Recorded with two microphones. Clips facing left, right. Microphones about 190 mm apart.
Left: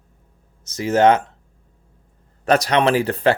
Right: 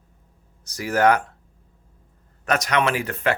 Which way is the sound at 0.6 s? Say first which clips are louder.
Left 4 dB; 25° left (ahead or behind).